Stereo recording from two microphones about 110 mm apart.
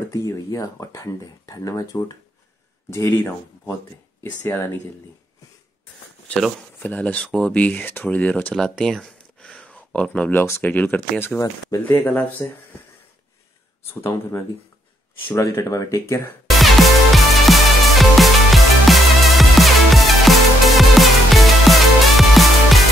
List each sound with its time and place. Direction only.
0.1 s speech: 30° left (ahead or behind)
6.2 s speech: 5° left (ahead or behind)
8.5 s a sound: 5° left (ahead or behind)
10.4 s speech: 20° left (ahead or behind)
14.0 s speech: 25° left (ahead or behind)
16.4 s music: centre (ahead or behind)